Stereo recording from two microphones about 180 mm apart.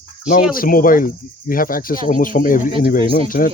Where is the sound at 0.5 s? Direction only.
50° left (ahead or behind).